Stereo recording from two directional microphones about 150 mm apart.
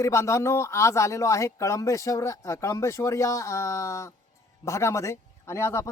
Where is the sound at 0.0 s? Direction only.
20° left (ahead or behind).